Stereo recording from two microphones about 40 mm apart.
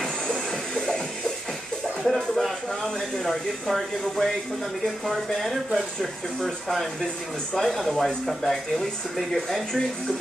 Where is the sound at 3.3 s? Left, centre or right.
Centre.